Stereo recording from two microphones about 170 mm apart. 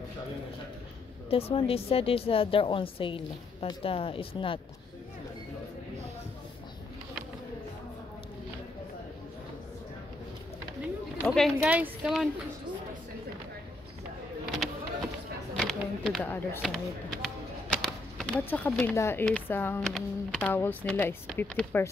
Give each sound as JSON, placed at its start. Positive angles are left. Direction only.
{"t": 1.3, "sound": "a woman's voice", "side_deg": 35}
{"t": 11.2, "sound": "speech", "side_deg": 0}
{"t": 15.5, "sound": "a sound", "side_deg": 0}
{"t": 18.7, "sound": "speech", "side_deg": 5}